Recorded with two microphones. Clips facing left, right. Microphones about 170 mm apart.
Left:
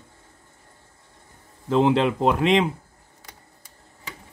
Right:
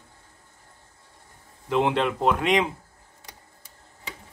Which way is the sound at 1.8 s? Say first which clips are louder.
Left 4 dB; centre (ahead or behind).